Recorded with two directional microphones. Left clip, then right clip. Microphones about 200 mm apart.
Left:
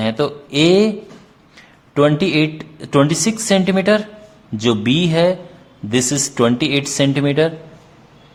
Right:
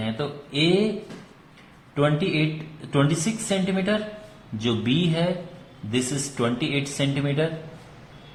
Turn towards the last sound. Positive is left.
turn(degrees=45)  # may be behind; listen again after turning